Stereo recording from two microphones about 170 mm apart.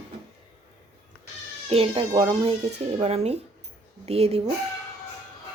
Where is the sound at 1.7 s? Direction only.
35° right (ahead or behind).